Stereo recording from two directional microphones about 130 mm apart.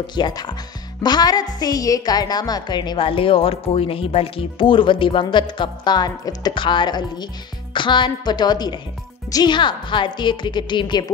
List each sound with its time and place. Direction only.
0.0 s a woman's voice: 35° left (ahead or behind)